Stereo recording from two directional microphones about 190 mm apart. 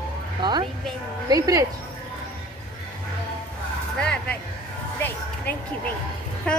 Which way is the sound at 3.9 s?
5° left (ahead or behind).